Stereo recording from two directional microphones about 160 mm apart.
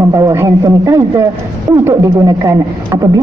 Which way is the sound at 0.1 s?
20° right (ahead or behind).